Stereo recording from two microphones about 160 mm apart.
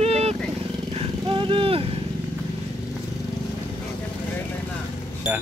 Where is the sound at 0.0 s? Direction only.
40° right (ahead or behind).